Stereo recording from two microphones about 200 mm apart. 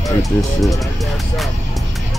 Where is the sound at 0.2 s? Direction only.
Centre (ahead or behind).